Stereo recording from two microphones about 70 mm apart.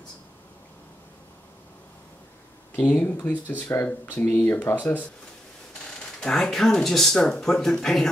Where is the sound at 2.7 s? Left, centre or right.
Centre.